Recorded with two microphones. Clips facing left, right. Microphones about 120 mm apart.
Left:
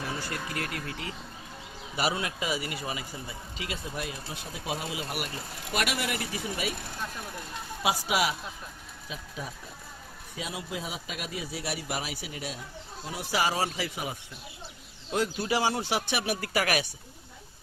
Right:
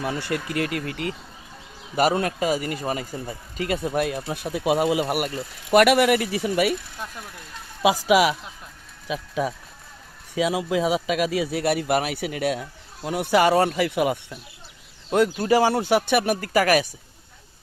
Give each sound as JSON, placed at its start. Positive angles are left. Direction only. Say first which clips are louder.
{"t": 0.0, "sound": "speech", "louder": "right 8 dB", "side_deg": -70}
{"t": 2.0, "sound": "speech", "louder": "right 9 dB", "side_deg": -50}
{"t": 8.0, "sound": "speech", "louder": "right 10 dB", "side_deg": -90}
{"t": 15.1, "sound": "speech", "louder": "right 9 dB", "side_deg": -55}